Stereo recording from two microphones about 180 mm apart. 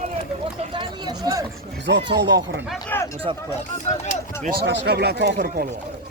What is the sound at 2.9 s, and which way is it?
Speech, 10° left (ahead or behind).